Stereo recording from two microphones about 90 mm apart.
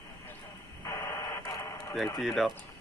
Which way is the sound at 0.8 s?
35° left (ahead or behind).